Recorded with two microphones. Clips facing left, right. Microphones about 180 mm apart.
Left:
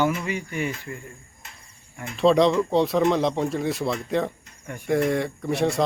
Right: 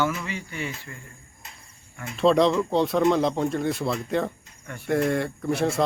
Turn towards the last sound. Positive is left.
turn(degrees=0)  # may be behind; listen again after turning